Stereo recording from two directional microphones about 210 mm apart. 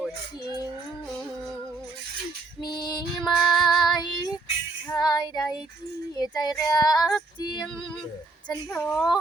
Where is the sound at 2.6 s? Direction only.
20° left (ahead or behind).